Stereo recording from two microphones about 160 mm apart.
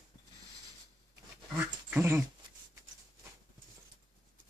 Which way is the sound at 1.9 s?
15° right (ahead or behind).